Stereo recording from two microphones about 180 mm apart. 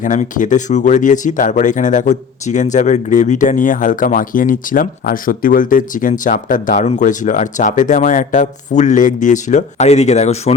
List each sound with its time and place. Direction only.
0.0 s speech: 45° left (ahead or behind)